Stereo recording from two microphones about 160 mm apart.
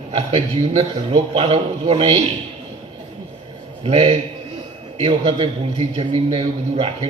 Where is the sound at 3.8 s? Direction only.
40° right (ahead or behind).